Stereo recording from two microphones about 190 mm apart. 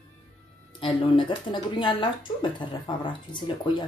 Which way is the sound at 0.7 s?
25° left (ahead or behind).